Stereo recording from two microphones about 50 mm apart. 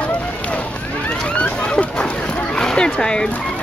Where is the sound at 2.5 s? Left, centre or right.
Centre.